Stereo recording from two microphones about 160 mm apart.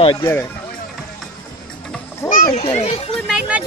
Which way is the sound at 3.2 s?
5° right (ahead or behind).